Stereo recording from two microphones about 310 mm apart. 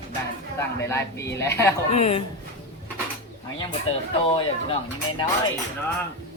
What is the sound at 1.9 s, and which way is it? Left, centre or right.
Speech, centre.